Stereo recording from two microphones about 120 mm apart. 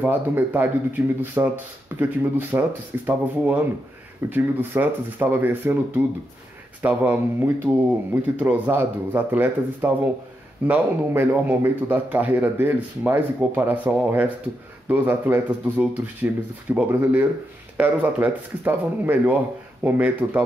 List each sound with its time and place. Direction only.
0.0 s speech: 15° right (ahead or behind)